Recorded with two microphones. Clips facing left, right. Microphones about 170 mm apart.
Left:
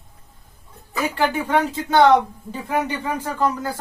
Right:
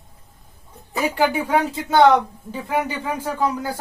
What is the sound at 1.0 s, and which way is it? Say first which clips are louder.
Speech: right 2 dB; 10° right (ahead or behind).